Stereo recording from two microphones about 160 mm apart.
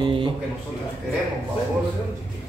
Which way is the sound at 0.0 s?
30° right (ahead or behind).